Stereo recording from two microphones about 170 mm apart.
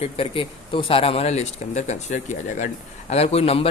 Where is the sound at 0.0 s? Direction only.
35° left (ahead or behind).